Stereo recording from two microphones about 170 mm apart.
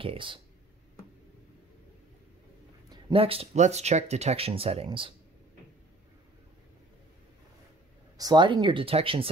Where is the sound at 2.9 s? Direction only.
35° right (ahead or behind).